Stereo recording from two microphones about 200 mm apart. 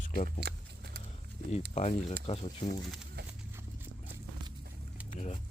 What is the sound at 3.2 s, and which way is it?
Horse, 55° right (ahead or behind).